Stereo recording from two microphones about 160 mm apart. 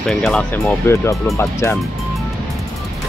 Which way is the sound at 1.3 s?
15° left (ahead or behind).